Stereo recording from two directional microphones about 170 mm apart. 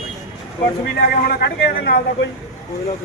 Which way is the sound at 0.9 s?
65° left (ahead or behind).